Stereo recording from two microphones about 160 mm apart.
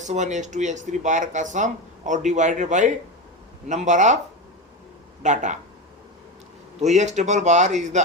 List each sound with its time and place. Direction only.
0.0 s speech: 50° right (ahead or behind)
5.2 s speech: 50° right (ahead or behind)
6.7 s speech: 45° right (ahead or behind)